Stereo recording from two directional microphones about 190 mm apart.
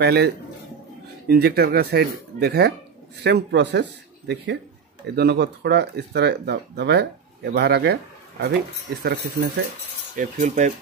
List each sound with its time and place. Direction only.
0.0 s speech: 60° right (ahead or behind)
1.3 s speech: 55° right (ahead or behind)
5.0 s speech: 55° right (ahead or behind)
10.1 s speech: 40° right (ahead or behind)